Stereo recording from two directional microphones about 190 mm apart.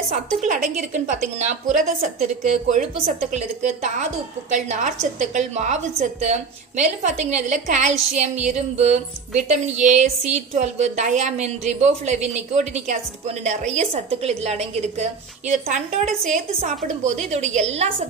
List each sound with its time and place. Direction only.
0.4 s a woman's voice: 40° right (ahead or behind)